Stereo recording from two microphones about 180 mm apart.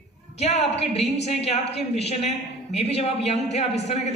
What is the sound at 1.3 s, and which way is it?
A woman's voice, 35° left (ahead or behind).